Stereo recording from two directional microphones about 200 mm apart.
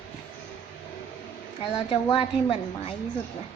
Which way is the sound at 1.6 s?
25° left (ahead or behind).